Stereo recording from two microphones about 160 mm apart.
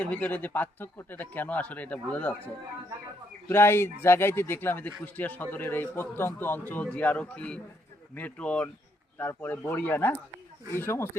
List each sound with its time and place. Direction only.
0.0 s a man's voice: 10° left (ahead or behind)
3.5 s a man's voice: 15° left (ahead or behind)